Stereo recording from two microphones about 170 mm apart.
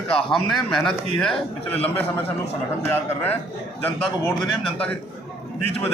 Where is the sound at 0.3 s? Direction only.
Centre (ahead or behind).